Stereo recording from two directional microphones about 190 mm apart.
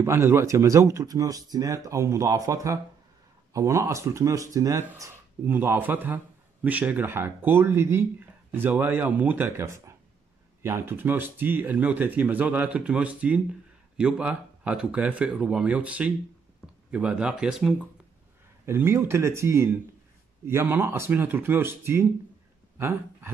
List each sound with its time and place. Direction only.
0.0 s speech: 15° right (ahead or behind)